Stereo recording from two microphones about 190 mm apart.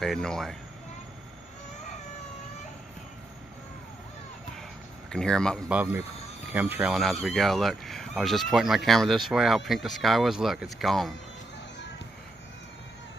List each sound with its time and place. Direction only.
0.0 s speech: centre (ahead or behind)
5.1 s speech: 5° left (ahead or behind)
5.8 s speech: 5° right (ahead or behind)